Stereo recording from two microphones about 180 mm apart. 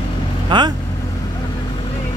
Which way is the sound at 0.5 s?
25° right (ahead or behind).